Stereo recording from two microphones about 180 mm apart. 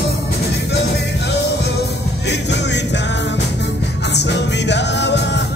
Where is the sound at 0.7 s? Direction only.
70° left (ahead or behind).